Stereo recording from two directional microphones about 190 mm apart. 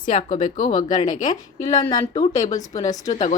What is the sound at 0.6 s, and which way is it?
A woman's voice, 25° left (ahead or behind).